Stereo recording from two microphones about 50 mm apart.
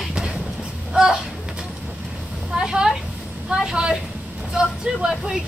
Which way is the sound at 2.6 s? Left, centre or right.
Centre.